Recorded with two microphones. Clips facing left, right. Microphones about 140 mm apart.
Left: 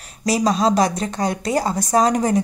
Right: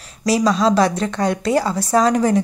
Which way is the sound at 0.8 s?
40° left (ahead or behind).